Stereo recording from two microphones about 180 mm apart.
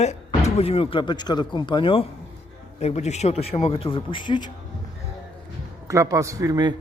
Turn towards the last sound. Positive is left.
turn(degrees=-20)  # may be behind; listen again after turning